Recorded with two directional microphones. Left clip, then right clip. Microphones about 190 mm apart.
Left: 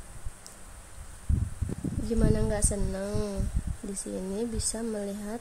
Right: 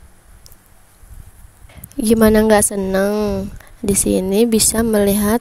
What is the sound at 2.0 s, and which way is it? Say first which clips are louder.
Speech: right 18 dB; 60° right (ahead or behind).